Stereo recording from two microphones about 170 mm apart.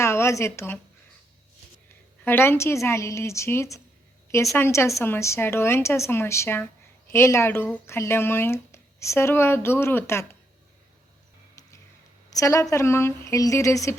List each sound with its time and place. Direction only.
0.0 s speech: 15° left (ahead or behind)
2.2 s speech: 15° left (ahead or behind)
11.6 s music: 20° left (ahead or behind)
12.3 s a woman's voice: 20° left (ahead or behind)